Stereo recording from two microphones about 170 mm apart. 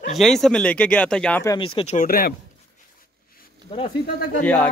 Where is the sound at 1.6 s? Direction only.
30° left (ahead or behind).